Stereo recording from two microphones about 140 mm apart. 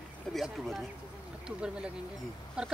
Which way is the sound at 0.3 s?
Centre (ahead or behind).